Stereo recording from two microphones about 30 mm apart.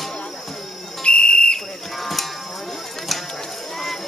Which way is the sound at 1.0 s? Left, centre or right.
Left.